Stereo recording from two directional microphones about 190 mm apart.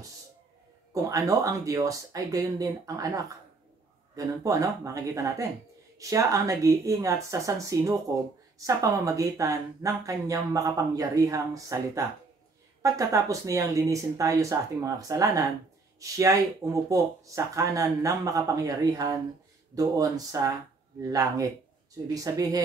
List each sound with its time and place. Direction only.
0.9 s speech: 20° right (ahead or behind)